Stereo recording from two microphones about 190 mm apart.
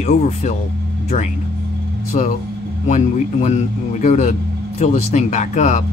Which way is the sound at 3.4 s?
40° left (ahead or behind).